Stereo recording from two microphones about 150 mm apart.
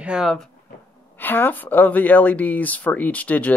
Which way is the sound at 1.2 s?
15° left (ahead or behind).